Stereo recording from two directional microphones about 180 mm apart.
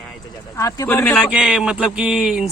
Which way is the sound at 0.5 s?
20° left (ahead or behind).